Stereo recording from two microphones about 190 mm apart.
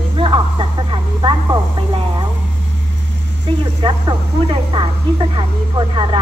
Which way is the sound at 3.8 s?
25° right (ahead or behind).